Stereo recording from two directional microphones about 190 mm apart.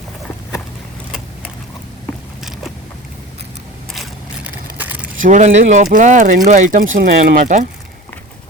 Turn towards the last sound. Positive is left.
turn(degrees=-40)  # may be behind; listen again after turning